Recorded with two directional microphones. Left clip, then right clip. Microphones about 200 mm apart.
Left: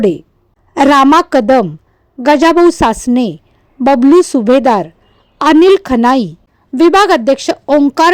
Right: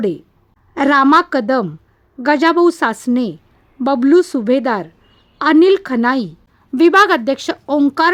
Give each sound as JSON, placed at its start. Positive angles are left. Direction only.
{"t": 0.0, "sound": "a woman's voice", "side_deg": 20}